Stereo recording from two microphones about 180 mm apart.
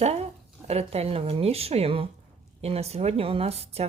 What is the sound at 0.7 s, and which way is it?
A woman's voice, 35° right (ahead or behind).